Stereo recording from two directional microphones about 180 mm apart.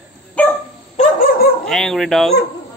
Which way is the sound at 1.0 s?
55° left (ahead or behind).